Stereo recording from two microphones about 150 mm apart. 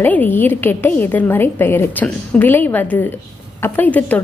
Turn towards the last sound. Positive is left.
turn(degrees=10)  # may be behind; listen again after turning